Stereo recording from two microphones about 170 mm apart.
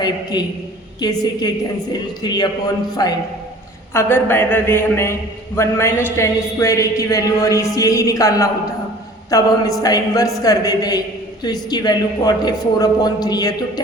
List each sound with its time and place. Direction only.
0.0 s a man's voice: 25° left (ahead or behind)
3.9 s a man's voice: 10° left (ahead or behind)